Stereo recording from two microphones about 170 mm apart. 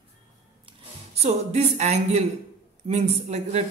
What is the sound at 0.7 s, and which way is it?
A woman's voice, 35° right (ahead or behind).